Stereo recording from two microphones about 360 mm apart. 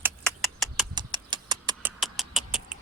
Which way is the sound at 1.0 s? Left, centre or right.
Centre.